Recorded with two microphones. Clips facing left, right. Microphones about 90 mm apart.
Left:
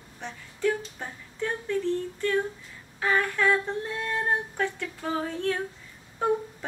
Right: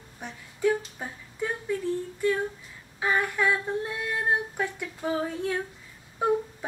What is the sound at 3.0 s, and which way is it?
Female singing, 15° right (ahead or behind).